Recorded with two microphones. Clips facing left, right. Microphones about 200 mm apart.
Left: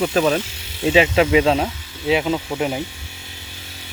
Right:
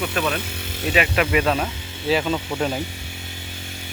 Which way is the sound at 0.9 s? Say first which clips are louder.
Left 6 dB; 25° left (ahead or behind).